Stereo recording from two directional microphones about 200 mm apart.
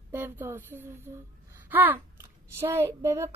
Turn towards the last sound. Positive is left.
turn(degrees=-15)  # may be behind; listen again after turning